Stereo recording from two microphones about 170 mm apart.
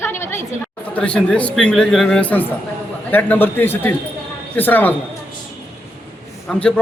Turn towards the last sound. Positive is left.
turn(degrees=5)  # may be behind; listen again after turning